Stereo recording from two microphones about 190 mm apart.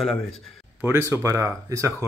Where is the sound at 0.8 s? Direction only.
15° right (ahead or behind).